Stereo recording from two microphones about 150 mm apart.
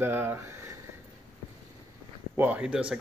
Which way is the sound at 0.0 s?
15° right (ahead or behind).